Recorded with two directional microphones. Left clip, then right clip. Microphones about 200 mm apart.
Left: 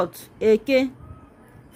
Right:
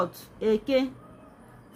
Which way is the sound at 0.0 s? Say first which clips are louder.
Left 6 dB; 30° left (ahead or behind).